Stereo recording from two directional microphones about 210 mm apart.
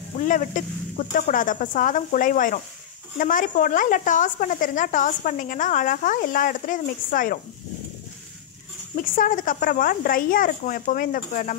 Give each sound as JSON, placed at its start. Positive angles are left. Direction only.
{"t": 0.2, "sound": "speech", "side_deg": 40}
{"t": 8.9, "sound": "speech", "side_deg": 40}